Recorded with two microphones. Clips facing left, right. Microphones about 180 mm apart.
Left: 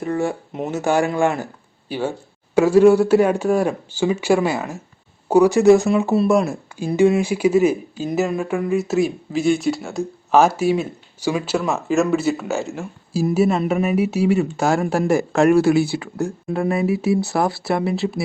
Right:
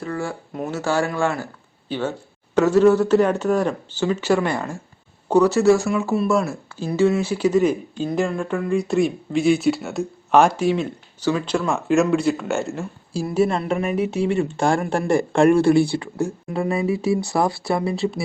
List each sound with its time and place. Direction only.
0.0 s speech: 20° left (ahead or behind); by 18.2 s centre (ahead or behind)